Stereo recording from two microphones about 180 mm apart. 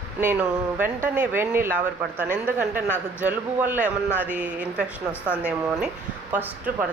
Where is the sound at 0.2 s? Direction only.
10° right (ahead or behind).